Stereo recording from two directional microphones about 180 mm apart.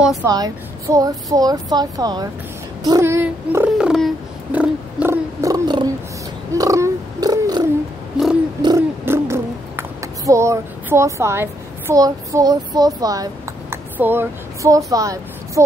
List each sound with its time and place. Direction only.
0.0 s a woman's voice: 5° right (ahead or behind)
0.3 s speech: 20° right (ahead or behind)
2.8 s a sound: 20° right (ahead or behind)
3.7 s a sound: centre (ahead or behind); by 7.6 s 20° right (ahead or behind)
8.6 s owl: 15° right (ahead or behind)
11.9 s speech: 20° right (ahead or behind)